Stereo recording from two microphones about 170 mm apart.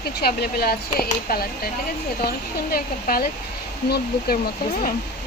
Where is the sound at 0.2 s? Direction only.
65° left (ahead or behind).